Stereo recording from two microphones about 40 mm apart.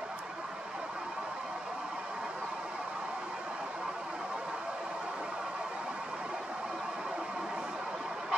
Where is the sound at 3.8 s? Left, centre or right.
Right.